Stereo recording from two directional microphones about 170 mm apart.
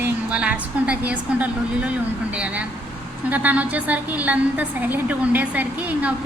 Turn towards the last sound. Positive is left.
turn(degrees=-10)  # may be behind; listen again after turning